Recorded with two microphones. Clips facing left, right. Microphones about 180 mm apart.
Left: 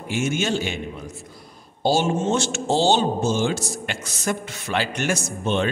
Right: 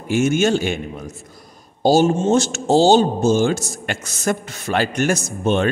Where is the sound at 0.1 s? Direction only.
45° right (ahead or behind).